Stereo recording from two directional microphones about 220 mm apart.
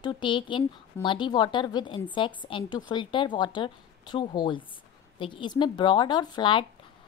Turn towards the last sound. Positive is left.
turn(degrees=20)  # may be behind; listen again after turning